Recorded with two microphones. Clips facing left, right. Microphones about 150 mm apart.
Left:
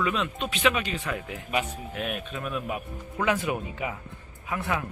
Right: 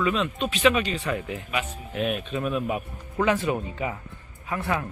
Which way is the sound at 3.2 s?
10° left (ahead or behind).